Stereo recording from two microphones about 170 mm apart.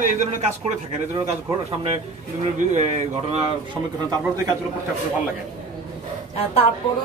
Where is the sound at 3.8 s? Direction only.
5° right (ahead or behind).